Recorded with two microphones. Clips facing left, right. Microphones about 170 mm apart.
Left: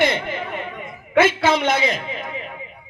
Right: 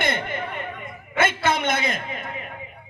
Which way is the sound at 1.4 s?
55° right (ahead or behind).